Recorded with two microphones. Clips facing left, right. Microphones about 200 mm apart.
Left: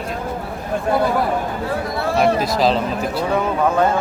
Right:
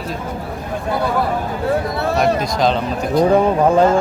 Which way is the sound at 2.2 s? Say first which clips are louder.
Left 1 dB; 5° left (ahead or behind).